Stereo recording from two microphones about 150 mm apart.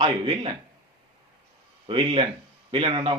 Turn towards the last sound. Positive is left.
turn(degrees=-35)  # may be behind; listen again after turning